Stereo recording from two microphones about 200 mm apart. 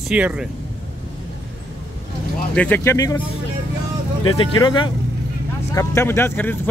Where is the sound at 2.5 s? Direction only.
5° left (ahead or behind).